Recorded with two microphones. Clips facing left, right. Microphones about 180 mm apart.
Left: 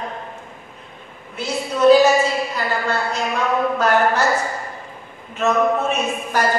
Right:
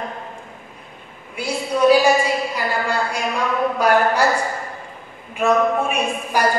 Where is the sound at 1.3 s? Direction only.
10° right (ahead or behind).